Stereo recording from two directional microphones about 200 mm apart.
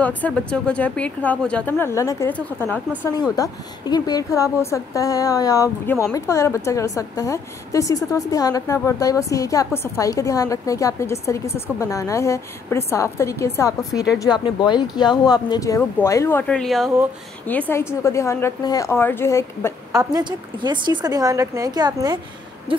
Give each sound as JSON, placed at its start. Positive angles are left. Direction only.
{"t": 0.0, "sound": "a woman's voice", "side_deg": 5}
{"t": 19.9, "sound": "a woman's voice", "side_deg": -20}